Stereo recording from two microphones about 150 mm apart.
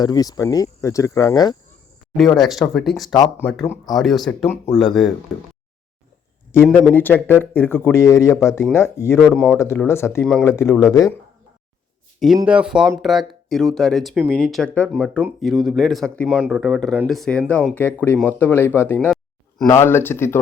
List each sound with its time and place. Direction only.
0.0 s speech: 25° left (ahead or behind)
2.1 s speech: centre (ahead or behind)
6.7 s speech: 15° left (ahead or behind)
9.1 s speech: 5° left (ahead or behind)
9.6 s speech: 15° left (ahead or behind)
12.5 s speech: 5° right (ahead or behind); by 15.2 s 10° left (ahead or behind)
15.4 s speech: 5° right (ahead or behind); by 20.4 s 15° left (ahead or behind)